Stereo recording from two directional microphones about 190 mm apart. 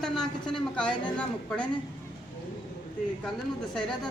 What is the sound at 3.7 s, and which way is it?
Speech, centre (ahead or behind).